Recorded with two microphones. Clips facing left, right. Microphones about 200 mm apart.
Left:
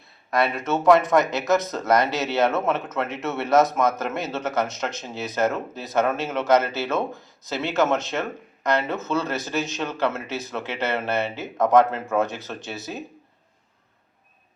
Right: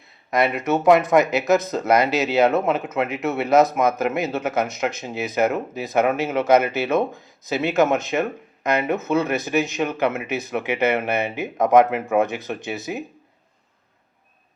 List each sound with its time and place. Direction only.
0.3 s speech: 20° right (ahead or behind)